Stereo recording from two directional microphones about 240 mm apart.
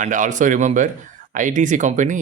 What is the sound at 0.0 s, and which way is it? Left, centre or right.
Speech, right.